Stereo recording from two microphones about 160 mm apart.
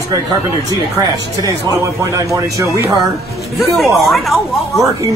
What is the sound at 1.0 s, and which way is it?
Speech, 20° right (ahead or behind).